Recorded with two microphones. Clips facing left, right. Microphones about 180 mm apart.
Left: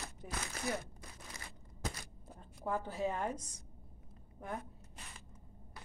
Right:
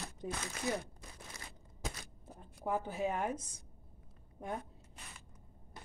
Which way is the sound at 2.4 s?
15° right (ahead or behind).